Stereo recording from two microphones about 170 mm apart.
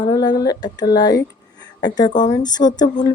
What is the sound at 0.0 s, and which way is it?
Speech, 25° left (ahead or behind).